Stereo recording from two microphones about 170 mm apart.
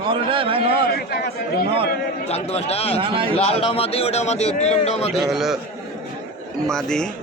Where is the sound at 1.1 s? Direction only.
65° left (ahead or behind).